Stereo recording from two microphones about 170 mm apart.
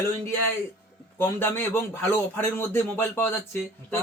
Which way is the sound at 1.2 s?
15° left (ahead or behind).